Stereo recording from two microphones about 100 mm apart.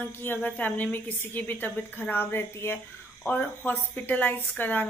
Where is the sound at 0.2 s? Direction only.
20° left (ahead or behind).